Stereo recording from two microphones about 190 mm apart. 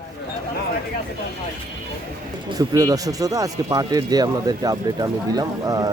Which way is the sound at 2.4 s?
20° right (ahead or behind).